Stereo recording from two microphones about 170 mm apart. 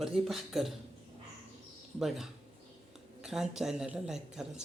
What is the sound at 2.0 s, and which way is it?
Speech, centre (ahead or behind).